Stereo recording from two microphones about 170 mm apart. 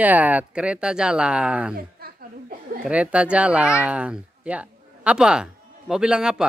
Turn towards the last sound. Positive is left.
turn(degrees=-5)  # may be behind; listen again after turning